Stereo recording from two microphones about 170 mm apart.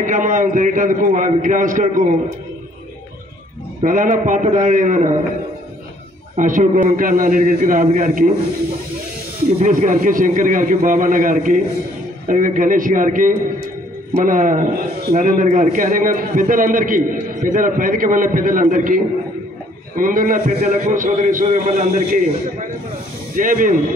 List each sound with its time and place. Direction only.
0.0 s a man's voice: 50° right (ahead or behind)
3.8 s a man's voice: 55° right (ahead or behind)
6.3 s a man's voice: 50° right (ahead or behind)
9.6 s a man's voice: 50° right (ahead or behind)